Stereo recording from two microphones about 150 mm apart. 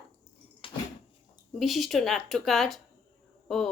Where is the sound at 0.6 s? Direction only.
35° left (ahead or behind).